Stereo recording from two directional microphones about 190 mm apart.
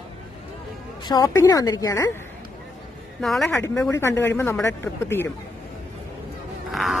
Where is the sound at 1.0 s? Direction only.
20° left (ahead or behind).